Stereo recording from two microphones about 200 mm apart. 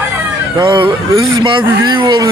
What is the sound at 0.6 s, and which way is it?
Speech, 25° right (ahead or behind).